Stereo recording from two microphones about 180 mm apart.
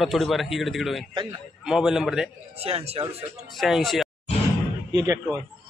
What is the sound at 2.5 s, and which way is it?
Speech, 35° right (ahead or behind).